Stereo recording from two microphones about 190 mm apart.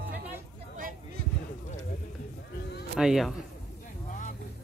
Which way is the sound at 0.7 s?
45° right (ahead or behind).